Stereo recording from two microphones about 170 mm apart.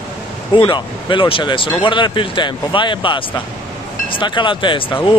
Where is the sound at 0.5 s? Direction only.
30° left (ahead or behind).